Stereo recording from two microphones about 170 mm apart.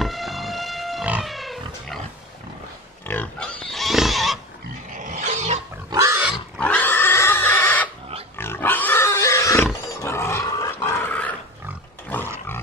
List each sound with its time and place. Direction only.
0.0 s pig: centre (ahead or behind)
3.1 s pig: 5° left (ahead or behind)
4.9 s roaring cats: 50° right (ahead or behind)
5.9 s pig: 20° right (ahead or behind)
6.6 s pig: 10° left (ahead or behind)
8.4 s a sound: 10° left (ahead or behind)
10.0 s pig: 15° left (ahead or behind)
12.1 s roaring cats: 10° left (ahead or behind)